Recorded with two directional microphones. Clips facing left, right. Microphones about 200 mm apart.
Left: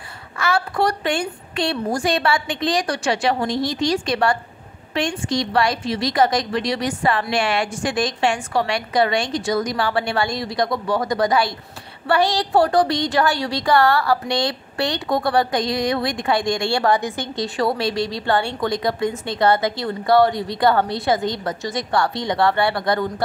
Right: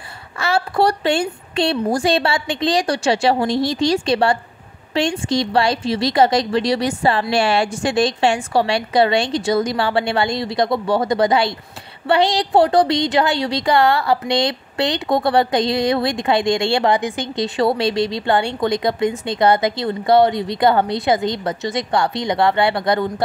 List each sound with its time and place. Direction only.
0.4 s a woman's voice: 30° right (ahead or behind)